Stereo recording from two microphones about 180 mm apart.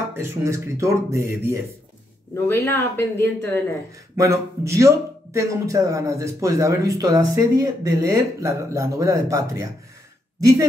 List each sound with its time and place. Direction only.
0.1 s a man's voice: 15° right (ahead or behind)
2.3 s speech: 15° left (ahead or behind)
4.2 s a man's voice: 15° right (ahead or behind)